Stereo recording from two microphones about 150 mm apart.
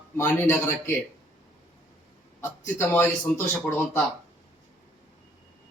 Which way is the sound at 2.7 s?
15° left (ahead or behind).